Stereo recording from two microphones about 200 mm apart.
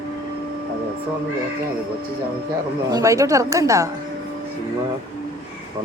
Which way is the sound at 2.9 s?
15° right (ahead or behind).